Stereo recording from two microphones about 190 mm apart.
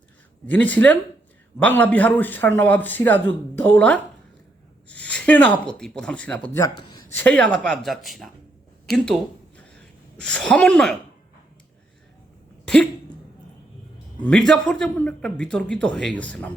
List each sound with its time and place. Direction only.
0.4 s a man's voice: 10° left (ahead or behind)
10.2 s a man's voice: 5° left (ahead or behind)
12.6 s a sound: 5° left (ahead or behind)
14.2 s a man's voice: 5° left (ahead or behind)